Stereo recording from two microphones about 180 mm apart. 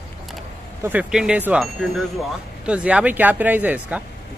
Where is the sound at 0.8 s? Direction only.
10° right (ahead or behind).